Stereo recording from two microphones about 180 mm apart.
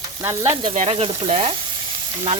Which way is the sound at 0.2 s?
20° right (ahead or behind).